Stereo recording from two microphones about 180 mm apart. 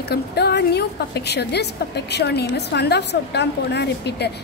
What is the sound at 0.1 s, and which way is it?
A woman's voice, 65° left (ahead or behind).